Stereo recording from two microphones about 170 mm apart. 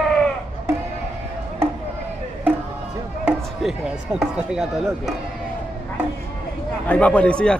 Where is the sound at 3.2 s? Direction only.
5° right (ahead or behind).